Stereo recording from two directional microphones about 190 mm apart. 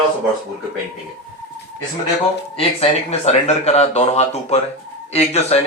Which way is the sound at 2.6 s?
35° left (ahead or behind).